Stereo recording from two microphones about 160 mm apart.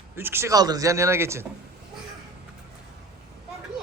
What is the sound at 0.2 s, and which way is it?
Speech, 15° right (ahead or behind).